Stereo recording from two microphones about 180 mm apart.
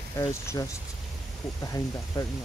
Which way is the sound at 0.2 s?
20° left (ahead or behind).